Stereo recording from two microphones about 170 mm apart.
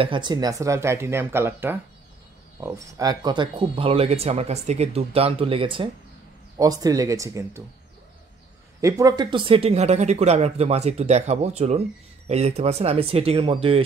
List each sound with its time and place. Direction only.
0.0 s speech: 30° right (ahead or behind)
8.8 s speech: 20° right (ahead or behind)